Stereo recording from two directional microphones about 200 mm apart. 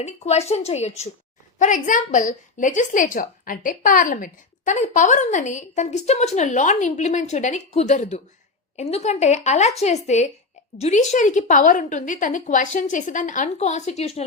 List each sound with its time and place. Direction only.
0.0 s a woman's voice: 35° left (ahead or behind)